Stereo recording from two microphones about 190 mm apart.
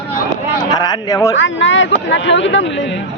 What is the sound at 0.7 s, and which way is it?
Speech, 20° left (ahead or behind).